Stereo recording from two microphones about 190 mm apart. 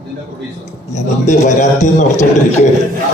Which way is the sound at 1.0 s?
40° left (ahead or behind).